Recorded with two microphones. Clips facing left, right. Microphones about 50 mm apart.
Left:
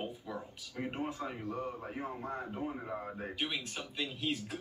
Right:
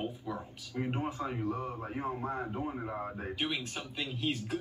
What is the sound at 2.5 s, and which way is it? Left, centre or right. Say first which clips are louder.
A man's voice: right 2 dB; centre.